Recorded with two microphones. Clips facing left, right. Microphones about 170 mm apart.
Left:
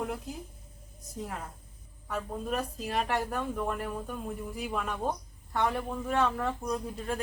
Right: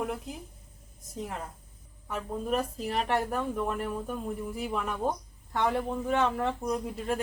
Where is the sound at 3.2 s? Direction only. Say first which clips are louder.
Right 2 dB; 5° right (ahead or behind).